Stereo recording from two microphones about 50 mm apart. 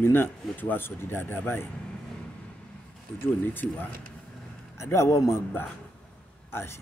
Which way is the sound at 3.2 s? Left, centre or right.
Left.